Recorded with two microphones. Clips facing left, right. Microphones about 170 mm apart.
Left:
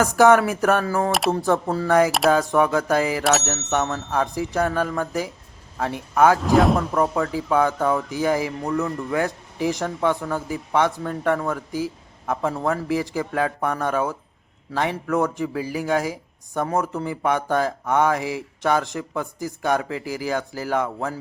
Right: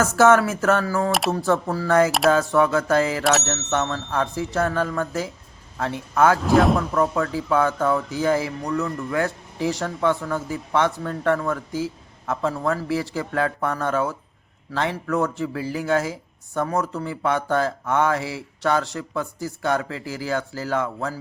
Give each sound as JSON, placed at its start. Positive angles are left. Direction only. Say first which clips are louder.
{"t": 0.0, "sound": "speech", "louder": "left 1 dB", "side_deg": 15}
{"t": 6.4, "sound": "speech", "louder": "even", "side_deg": 0}
{"t": 6.9, "sound": "speech", "louder": "even", "side_deg": 15}